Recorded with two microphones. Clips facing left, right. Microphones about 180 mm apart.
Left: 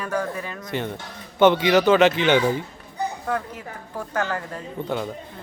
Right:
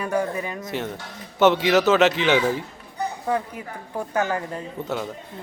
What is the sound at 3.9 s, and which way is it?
Speech, 15° right (ahead or behind).